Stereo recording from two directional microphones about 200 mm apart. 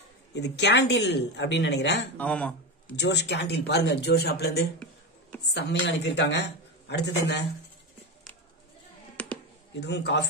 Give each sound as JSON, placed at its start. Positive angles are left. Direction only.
{"t": 0.3, "sound": "speech", "side_deg": 55}
{"t": 2.1, "sound": "speech", "side_deg": 5}
{"t": 3.0, "sound": "speech", "side_deg": 60}
{"t": 9.1, "sound": "a sound", "side_deg": 5}
{"t": 9.8, "sound": "speech", "side_deg": 60}